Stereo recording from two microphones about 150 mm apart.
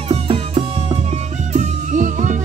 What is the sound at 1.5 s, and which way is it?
Music, 55° right (ahead or behind).